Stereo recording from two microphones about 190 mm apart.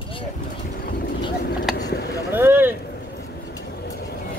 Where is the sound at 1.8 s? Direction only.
60° left (ahead or behind).